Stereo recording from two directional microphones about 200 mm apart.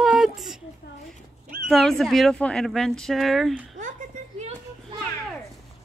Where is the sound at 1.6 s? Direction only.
Centre (ahead or behind).